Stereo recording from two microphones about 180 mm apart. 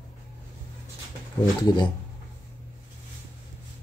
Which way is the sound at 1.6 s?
25° left (ahead or behind).